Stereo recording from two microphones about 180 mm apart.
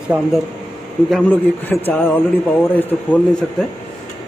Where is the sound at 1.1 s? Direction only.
5° left (ahead or behind).